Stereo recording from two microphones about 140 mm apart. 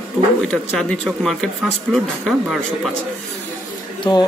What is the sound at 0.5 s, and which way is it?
Speech, 5° left (ahead or behind).